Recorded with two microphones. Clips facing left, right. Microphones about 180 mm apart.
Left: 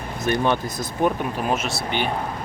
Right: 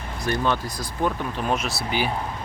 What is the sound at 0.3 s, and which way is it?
Speech, 20° left (ahead or behind).